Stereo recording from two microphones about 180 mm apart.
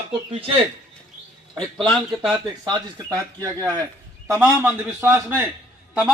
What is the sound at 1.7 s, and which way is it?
Speech, centre (ahead or behind).